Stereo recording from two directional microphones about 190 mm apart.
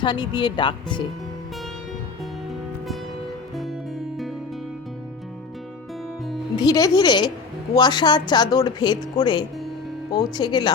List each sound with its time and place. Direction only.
0.0 s a woman's voice: 25° left (ahead or behind)
2.5 s music: centre (ahead or behind)
6.6 s a woman's voice: 20° left (ahead or behind)